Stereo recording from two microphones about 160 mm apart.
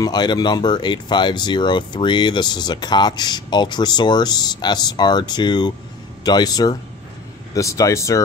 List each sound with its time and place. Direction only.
0.0 s speech: 25° left (ahead or behind)